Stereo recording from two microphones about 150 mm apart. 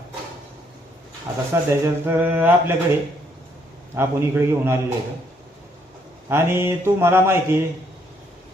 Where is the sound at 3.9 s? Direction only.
15° right (ahead or behind).